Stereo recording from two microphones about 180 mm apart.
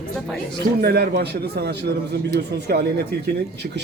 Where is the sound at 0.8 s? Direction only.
60° right (ahead or behind).